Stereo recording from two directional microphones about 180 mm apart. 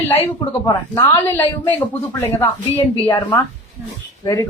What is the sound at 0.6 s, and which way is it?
Speech, 20° left (ahead or behind).